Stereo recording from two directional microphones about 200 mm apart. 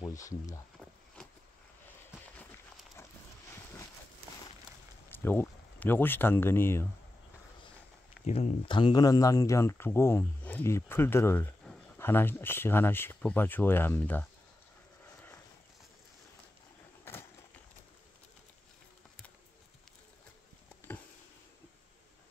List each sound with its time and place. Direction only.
0.0 s a sound: 15° left (ahead or behind)
2.3 s run: 10° left (ahead or behind)
5.1 s speech: 10° left (ahead or behind)
8.3 s speech: 30° left (ahead or behind); by 14.2 s 10° left (ahead or behind)